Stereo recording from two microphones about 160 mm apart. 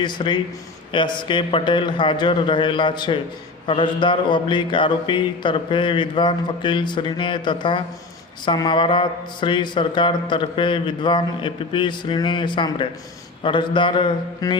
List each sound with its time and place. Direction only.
0.0 s a man's voice: 30° left (ahead or behind)
0.9 s mantra: 30° left (ahead or behind)